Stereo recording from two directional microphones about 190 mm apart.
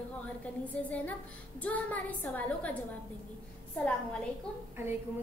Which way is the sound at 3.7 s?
5° left (ahead or behind).